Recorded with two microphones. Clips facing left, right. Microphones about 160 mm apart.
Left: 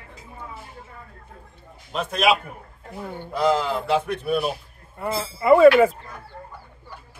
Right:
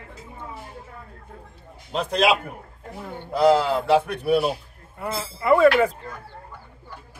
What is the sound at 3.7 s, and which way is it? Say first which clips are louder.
Speech: right 3 dB; 35° right (ahead or behind).